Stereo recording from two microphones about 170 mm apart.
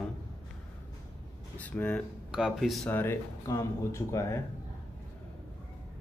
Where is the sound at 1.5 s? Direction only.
10° left (ahead or behind).